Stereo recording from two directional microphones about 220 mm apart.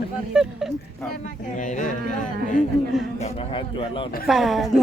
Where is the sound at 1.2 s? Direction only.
35° left (ahead or behind).